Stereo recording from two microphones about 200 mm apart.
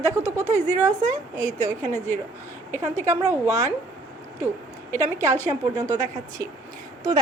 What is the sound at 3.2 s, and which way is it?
Speech, 15° right (ahead or behind).